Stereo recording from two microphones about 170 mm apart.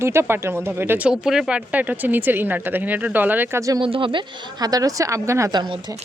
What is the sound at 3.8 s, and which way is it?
A woman's voice, 30° right (ahead or behind).